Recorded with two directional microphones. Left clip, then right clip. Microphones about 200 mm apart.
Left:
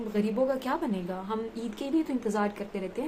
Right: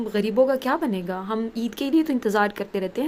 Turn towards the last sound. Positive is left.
turn(degrees=-40)  # may be behind; listen again after turning